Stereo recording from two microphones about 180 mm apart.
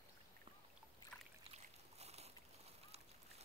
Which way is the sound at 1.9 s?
35° right (ahead or behind).